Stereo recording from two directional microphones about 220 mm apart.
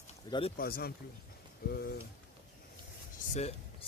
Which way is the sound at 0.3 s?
20° left (ahead or behind).